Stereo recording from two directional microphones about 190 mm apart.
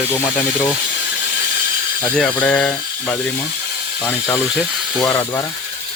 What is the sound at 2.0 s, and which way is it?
Speech, 5° left (ahead or behind).